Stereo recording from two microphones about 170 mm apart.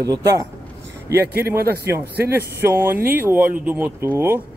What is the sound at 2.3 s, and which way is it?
Speech, 15° right (ahead or behind).